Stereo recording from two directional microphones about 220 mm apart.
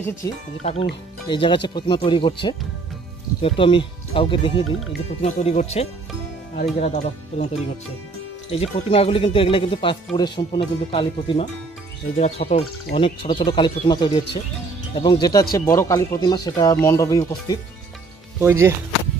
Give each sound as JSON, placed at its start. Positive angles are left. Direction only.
{"t": 0.2, "sound": "speech", "side_deg": 15}
{"t": 0.6, "sound": "speech", "side_deg": 30}
{"t": 3.4, "sound": "speech", "side_deg": 25}
{"t": 18.4, "sound": "speech", "side_deg": -10}